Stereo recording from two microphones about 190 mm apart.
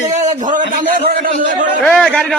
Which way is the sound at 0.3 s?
40° right (ahead or behind).